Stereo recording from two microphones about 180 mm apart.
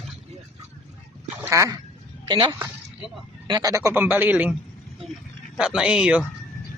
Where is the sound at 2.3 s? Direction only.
25° right (ahead or behind); by 4.5 s 10° right (ahead or behind).